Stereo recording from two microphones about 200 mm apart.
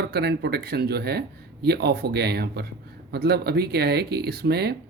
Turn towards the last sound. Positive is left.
turn(degrees=-55)  # may be behind; listen again after turning